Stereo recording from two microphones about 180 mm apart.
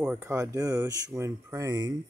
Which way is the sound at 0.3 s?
20° right (ahead or behind).